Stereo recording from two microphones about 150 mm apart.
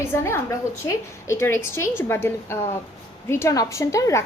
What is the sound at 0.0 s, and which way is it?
A woman's voice, 15° left (ahead or behind).